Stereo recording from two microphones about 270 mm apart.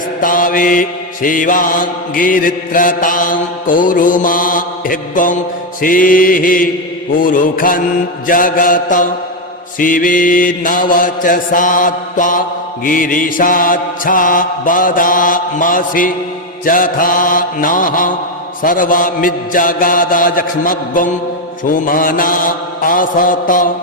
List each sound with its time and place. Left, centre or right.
0.2 s mantra: left